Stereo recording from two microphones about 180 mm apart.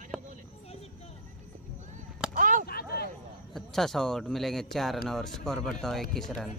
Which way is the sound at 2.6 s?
60° left (ahead or behind).